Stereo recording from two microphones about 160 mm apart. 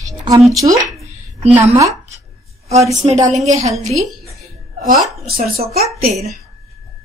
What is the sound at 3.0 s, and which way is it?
Speech, 45° right (ahead or behind).